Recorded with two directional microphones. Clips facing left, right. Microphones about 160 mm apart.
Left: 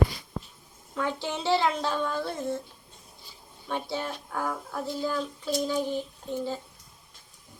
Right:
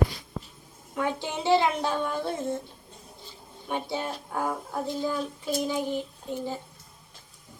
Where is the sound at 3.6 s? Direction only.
15° right (ahead or behind).